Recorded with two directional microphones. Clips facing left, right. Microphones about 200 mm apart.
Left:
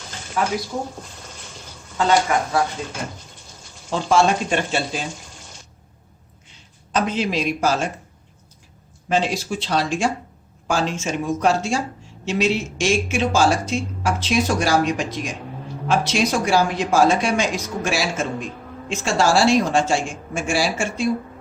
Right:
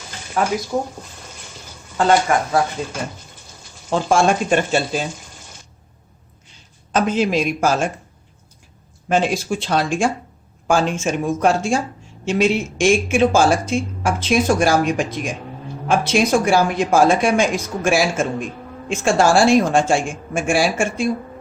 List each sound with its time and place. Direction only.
2.0 s speech: 50° right (ahead or behind)
3.8 s speech: 50° right (ahead or behind)
6.9 s speech: 50° right (ahead or behind)
9.0 s speech: 50° right (ahead or behind)